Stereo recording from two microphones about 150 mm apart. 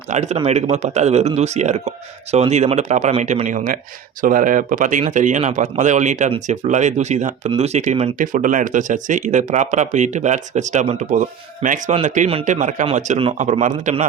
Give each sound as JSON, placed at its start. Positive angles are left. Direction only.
{"t": 0.1, "sound": "speech", "side_deg": -50}
{"t": 8.2, "sound": "speech", "side_deg": -60}